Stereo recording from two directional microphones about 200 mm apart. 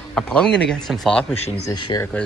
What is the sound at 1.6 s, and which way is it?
Speech, 20° left (ahead or behind).